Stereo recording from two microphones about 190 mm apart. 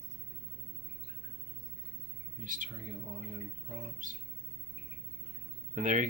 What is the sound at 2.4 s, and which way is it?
Speech, 45° right (ahead or behind).